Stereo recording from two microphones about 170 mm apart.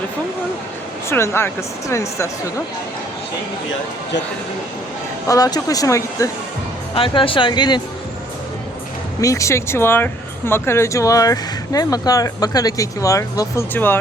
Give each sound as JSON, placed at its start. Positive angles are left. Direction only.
{"t": 1.1, "sound": "speech", "side_deg": 15}
{"t": 5.2, "sound": "speech", "side_deg": 20}
{"t": 6.9, "sound": "speech", "side_deg": 30}
{"t": 9.2, "sound": "speech", "side_deg": 20}